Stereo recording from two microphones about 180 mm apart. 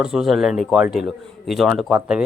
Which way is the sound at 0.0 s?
5° right (ahead or behind).